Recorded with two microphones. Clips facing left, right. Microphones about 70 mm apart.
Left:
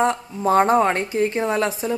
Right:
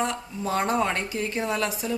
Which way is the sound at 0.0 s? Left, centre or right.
Left.